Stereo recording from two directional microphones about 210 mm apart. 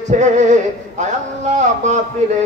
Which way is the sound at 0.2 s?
35° right (ahead or behind).